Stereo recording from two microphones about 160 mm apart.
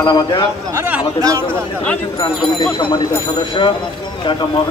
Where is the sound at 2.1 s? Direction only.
30° left (ahead or behind).